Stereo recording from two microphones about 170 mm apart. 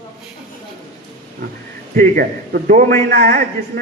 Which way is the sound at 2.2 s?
55° right (ahead or behind).